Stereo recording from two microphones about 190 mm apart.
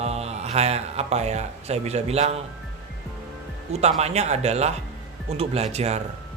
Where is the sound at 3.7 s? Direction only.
35° right (ahead or behind).